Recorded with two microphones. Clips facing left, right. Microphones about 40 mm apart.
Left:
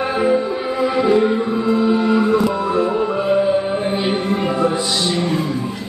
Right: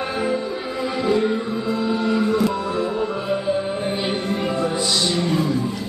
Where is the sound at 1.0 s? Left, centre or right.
Centre.